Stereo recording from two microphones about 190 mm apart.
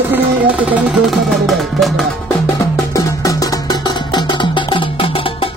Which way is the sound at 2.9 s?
15° left (ahead or behind).